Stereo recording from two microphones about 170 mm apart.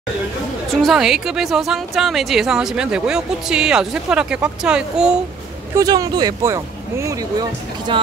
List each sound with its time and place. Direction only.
0.7 s a woman's voice: centre (ahead or behind)
5.8 s speech: 20° right (ahead or behind)